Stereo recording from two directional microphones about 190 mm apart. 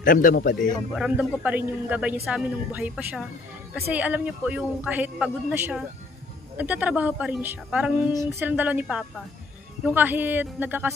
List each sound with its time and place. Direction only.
0.0 s a man's voice: 45° left (ahead or behind)
0.7 s a woman's voice: 5° right (ahead or behind)